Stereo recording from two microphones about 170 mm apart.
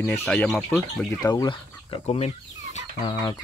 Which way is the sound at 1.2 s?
20° left (ahead or behind).